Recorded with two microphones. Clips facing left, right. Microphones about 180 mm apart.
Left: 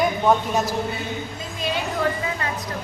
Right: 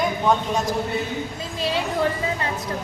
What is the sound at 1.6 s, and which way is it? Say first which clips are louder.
Speech: right 2 dB; 30° right (ahead or behind).